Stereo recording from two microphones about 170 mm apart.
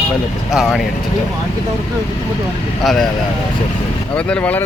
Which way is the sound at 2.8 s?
Centre (ahead or behind).